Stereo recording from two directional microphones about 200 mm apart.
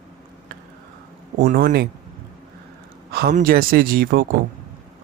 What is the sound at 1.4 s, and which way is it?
Speech, 45° right (ahead or behind).